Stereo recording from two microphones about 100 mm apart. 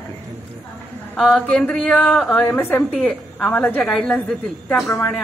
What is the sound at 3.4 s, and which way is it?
Speech, 15° left (ahead or behind).